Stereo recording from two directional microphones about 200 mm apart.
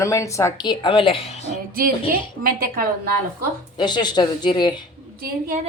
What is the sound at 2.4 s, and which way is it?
Speech, 45° right (ahead or behind).